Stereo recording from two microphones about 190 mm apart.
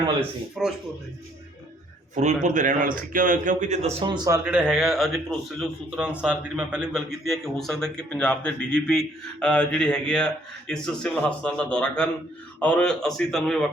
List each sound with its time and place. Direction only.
0.6 s a man's voice: centre (ahead or behind)
2.1 s a man's voice: 40° right (ahead or behind)
4.0 s speech: 20° right (ahead or behind)
4.4 s a man's voice: 5° right (ahead or behind)